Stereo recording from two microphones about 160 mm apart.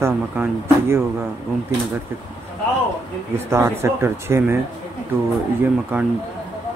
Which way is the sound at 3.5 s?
15° right (ahead or behind).